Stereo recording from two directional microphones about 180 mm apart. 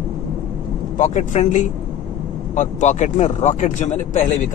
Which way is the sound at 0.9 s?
40° left (ahead or behind).